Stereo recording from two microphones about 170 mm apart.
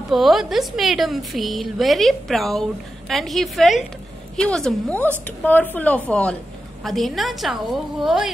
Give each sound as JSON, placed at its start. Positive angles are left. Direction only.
{"t": 0.1, "sound": "a woman's voice", "side_deg": 0}